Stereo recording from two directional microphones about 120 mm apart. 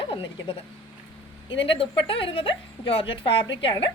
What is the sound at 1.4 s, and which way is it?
A woman's voice, 50° left (ahead or behind).